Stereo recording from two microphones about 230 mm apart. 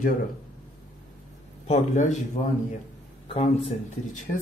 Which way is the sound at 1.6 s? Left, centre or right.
Left.